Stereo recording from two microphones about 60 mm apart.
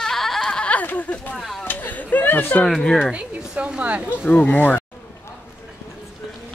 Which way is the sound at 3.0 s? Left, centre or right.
Centre.